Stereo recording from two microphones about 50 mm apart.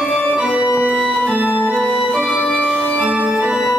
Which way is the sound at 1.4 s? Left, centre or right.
Right.